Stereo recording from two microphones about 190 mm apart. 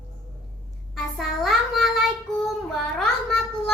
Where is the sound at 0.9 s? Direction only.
Centre (ahead or behind).